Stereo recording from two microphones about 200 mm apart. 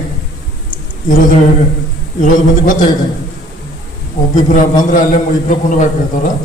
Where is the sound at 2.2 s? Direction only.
40° left (ahead or behind).